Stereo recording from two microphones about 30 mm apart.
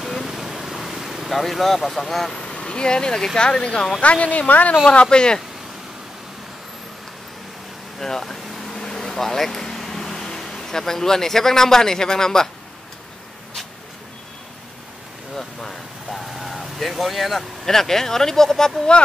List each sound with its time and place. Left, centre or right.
0.1 s vehicle: centre
1.3 s speech: centre
2.3 s vehicle: left
3.3 s speech: left
4.0 s a woman's voice: left
5.1 s speech: left
8.0 s vehicle: centre
16.1 s vehicle: centre
17.6 s speech: centre
18.9 s speech: left